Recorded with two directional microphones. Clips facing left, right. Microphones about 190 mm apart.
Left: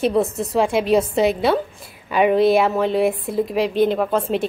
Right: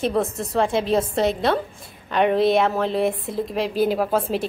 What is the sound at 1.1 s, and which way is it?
A woman's voice, 5° left (ahead or behind).